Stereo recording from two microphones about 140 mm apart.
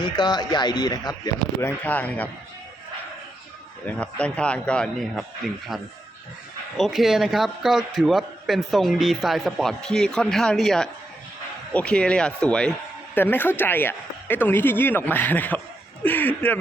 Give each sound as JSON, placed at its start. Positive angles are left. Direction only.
{"t": 0.0, "sound": "speech", "side_deg": 30}
{"t": 1.6, "sound": "speech", "side_deg": 10}
{"t": 3.8, "sound": "speech", "side_deg": 10}
{"t": 6.7, "sound": "a man's voice", "side_deg": 0}